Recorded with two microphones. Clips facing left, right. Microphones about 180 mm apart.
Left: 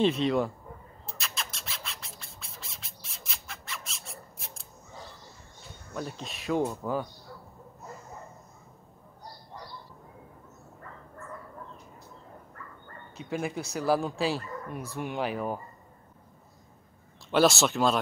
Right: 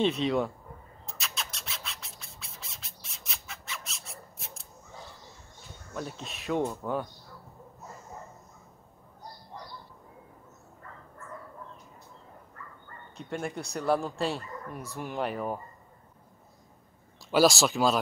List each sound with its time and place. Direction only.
0.0 s speech: centre (ahead or behind)
1.0 s a sound: centre (ahead or behind)
5.9 s speech: centre (ahead or behind)
13.2 s speech: 5° left (ahead or behind)
17.3 s speech: centre (ahead or behind)